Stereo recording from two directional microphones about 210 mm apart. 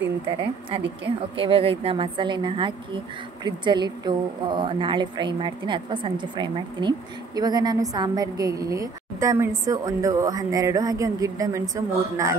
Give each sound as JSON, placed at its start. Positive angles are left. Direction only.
{"t": 1.3, "sound": "a woman's voice", "side_deg": -25}